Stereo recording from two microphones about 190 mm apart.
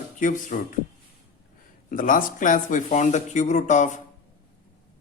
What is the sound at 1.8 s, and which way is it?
Speech, 45° left (ahead or behind).